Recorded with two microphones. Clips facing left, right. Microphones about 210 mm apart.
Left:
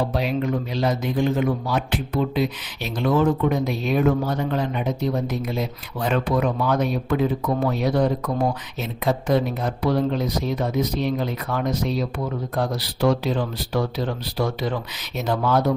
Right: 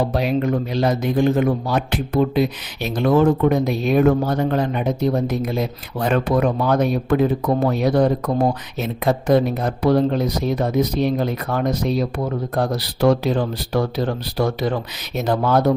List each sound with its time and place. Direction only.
0.1 s speech: 45° right (ahead or behind)
13.0 s speech: 60° right (ahead or behind); by 15.7 s 40° right (ahead or behind)